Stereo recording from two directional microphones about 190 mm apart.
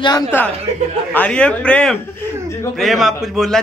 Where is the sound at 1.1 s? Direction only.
5° left (ahead or behind).